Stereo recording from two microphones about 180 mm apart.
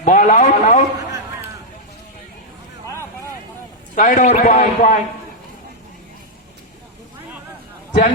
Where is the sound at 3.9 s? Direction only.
45° left (ahead or behind).